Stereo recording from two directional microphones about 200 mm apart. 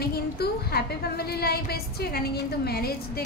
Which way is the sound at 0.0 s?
50° left (ahead or behind).